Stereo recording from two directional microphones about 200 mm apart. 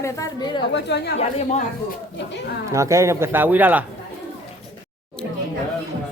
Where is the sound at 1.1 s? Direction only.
35° left (ahead or behind).